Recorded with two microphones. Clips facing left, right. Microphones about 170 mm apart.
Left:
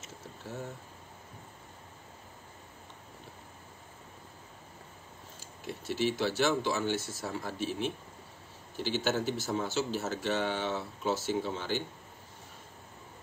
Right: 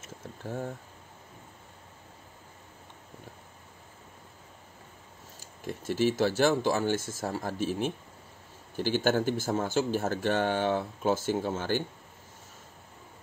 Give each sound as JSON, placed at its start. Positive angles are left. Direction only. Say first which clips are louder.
{"t": 5.4, "sound": "speech", "louder": "right 4 dB", "side_deg": -45}